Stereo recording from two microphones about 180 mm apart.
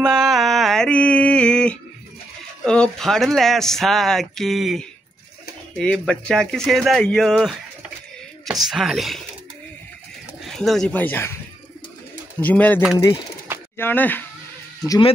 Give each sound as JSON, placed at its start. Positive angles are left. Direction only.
{"t": 0.0, "sound": "mantra", "side_deg": 0}
{"t": 2.6, "sound": "speech", "side_deg": 5}
{"t": 8.5, "sound": "speech", "side_deg": 0}
{"t": 10.4, "sound": "speech", "side_deg": 0}
{"t": 12.4, "sound": "speech", "side_deg": 10}
{"t": 14.9, "sound": "speech", "side_deg": 30}